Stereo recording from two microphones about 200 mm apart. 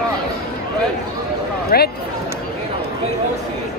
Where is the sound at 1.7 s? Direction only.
50° left (ahead or behind).